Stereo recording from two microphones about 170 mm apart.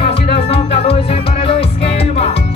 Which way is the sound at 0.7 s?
35° left (ahead or behind).